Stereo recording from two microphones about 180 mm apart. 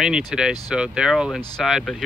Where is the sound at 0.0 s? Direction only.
5° right (ahead or behind).